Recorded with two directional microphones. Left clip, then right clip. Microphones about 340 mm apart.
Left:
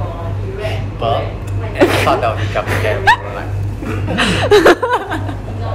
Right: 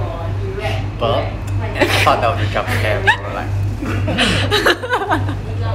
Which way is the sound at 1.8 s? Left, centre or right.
Left.